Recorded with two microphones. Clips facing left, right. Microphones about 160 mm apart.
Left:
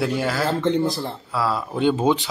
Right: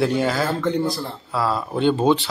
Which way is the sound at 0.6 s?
20° left (ahead or behind).